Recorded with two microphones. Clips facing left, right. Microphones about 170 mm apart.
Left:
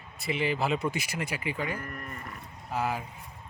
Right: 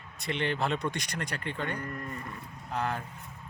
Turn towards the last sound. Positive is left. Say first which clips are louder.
# left 2 dB
turn(degrees=5)  # may be behind; listen again after turning